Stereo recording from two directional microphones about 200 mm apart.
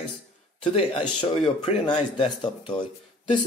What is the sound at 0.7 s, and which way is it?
Speech, 25° left (ahead or behind).